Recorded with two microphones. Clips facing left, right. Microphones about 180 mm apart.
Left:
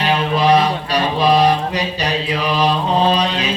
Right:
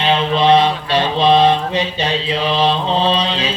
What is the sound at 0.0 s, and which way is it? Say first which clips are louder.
Mantra: right 1 dB; 25° right (ahead or behind).